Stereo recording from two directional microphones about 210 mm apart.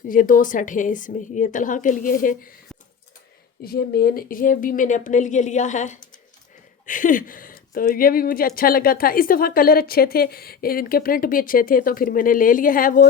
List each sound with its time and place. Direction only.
0.1 s a woman's voice: 40° left (ahead or behind)
3.6 s a woman's voice: 45° left (ahead or behind)